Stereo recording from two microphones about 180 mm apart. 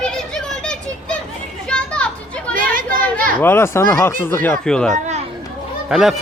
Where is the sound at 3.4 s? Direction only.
15° left (ahead or behind).